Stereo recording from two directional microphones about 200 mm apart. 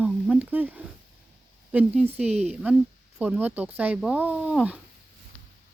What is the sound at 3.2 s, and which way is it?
Speech, 10° right (ahead or behind).